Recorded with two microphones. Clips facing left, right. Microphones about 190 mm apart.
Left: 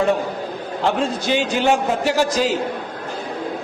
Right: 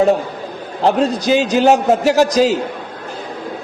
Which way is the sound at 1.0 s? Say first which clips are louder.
Right 5 dB; 40° right (ahead or behind).